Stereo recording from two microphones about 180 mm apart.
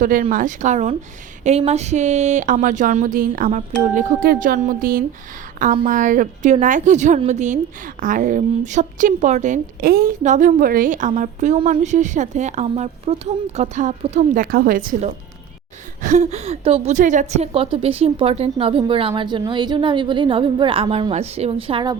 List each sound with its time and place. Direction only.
0.0 s a woman's voice: 50° right (ahead or behind); by 21.9 s 30° right (ahead or behind)